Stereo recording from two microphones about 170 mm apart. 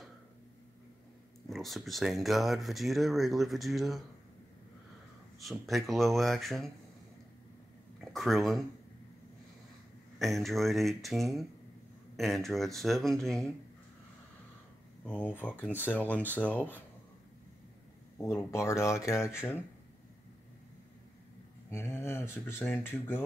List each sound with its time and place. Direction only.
1.5 s speech: centre (ahead or behind)
5.4 s speech: centre (ahead or behind)
8.0 s speech: centre (ahead or behind)
10.1 s speech: centre (ahead or behind)
15.0 s speech: 10° left (ahead or behind)
18.1 s speech: 15° left (ahead or behind)
21.6 s speech: 15° left (ahead or behind)